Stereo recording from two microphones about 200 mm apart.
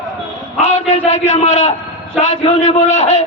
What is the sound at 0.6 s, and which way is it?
A man's voice, 35° left (ahead or behind).